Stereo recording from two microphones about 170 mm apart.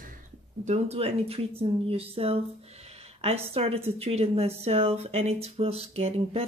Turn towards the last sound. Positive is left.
turn(degrees=-35)  # may be behind; listen again after turning